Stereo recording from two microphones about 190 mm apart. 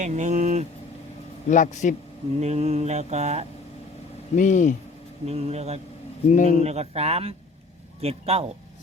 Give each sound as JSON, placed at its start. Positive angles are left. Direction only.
{"t": 0.0, "sound": "speech", "side_deg": -40}
{"t": 1.5, "sound": "a man's voice", "side_deg": 40}
{"t": 2.4, "sound": "mantra", "side_deg": -35}
{"t": 4.4, "sound": "a man's voice", "side_deg": 40}
{"t": 5.2, "sound": "mantra", "side_deg": -35}
{"t": 6.3, "sound": "a man's voice", "side_deg": 40}
{"t": 6.6, "sound": "mantra", "side_deg": -35}